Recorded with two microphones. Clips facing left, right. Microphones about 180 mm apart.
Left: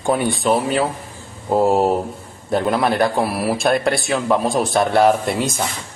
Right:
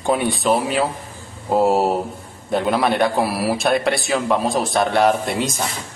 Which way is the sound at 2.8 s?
Centre (ahead or behind).